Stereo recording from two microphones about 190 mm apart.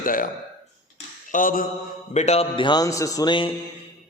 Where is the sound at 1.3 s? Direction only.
45° left (ahead or behind).